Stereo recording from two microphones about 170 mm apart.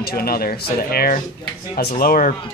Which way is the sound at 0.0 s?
65° left (ahead or behind).